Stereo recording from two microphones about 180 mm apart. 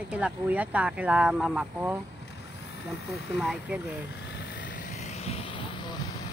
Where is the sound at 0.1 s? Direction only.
5° right (ahead or behind).